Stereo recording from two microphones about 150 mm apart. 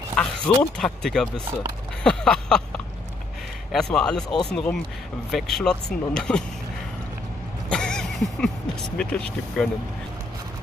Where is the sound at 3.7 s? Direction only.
5° left (ahead or behind).